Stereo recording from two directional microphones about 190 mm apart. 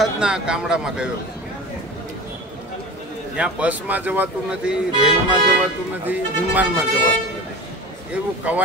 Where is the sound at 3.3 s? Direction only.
5° right (ahead or behind).